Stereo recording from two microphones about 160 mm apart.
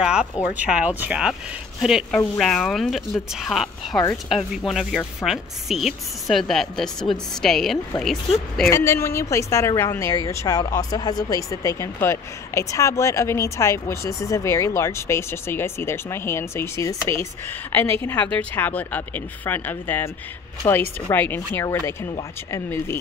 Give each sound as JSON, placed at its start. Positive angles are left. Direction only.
{"t": 0.0, "sound": "a woman's voice", "side_deg": -5}
{"t": 8.6, "sound": "a woman's voice", "side_deg": 15}